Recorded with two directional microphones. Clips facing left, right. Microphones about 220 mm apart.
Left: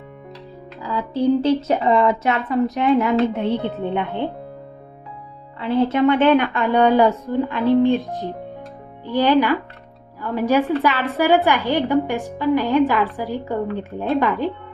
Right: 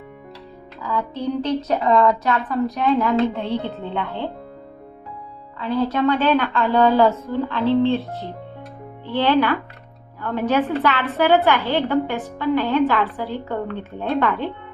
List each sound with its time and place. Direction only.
0.8 s a woman's voice: 30° left (ahead or behind)
5.5 s a woman's voice: 30° left (ahead or behind); by 14.5 s 10° left (ahead or behind)